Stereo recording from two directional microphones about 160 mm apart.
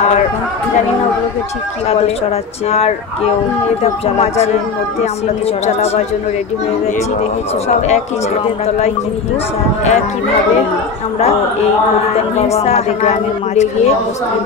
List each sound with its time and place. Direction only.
3.8 s speech: 40° left (ahead or behind)
12.4 s a woman's voice: 40° left (ahead or behind)